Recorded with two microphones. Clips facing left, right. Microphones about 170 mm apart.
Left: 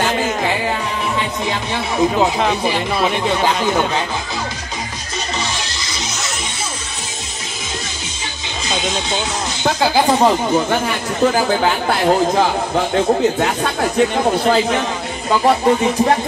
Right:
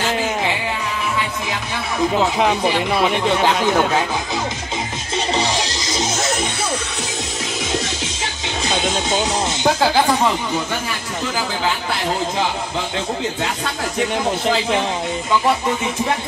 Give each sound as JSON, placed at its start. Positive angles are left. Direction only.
{"t": 3.4, "sound": "speech", "side_deg": 0}
{"t": 8.6, "sound": "speech", "side_deg": -55}
{"t": 9.8, "sound": "speech", "side_deg": 0}
{"t": 10.0, "sound": "speech", "side_deg": 30}
{"t": 10.5, "sound": "speech", "side_deg": 50}
{"t": 15.4, "sound": "a sound", "side_deg": 40}